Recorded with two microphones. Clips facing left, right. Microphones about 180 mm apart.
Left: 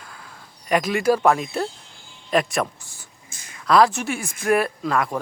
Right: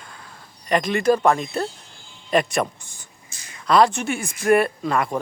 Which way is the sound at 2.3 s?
Centre (ahead or behind).